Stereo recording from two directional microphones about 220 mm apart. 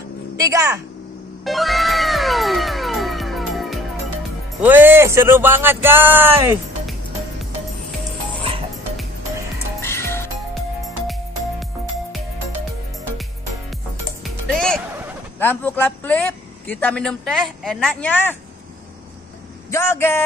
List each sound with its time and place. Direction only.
0.4 s speech: 15° right (ahead or behind)
1.4 s music: centre (ahead or behind)
4.6 s speech: 10° right (ahead or behind)
8.4 s music: 25° right (ahead or behind)
9.8 s music: 10° left (ahead or behind)
10.5 s music: centre (ahead or behind)
14.2 s music: 5° left (ahead or behind)
15.3 s a man's voice: 10° left (ahead or behind)
19.7 s a man's voice: 10° left (ahead or behind)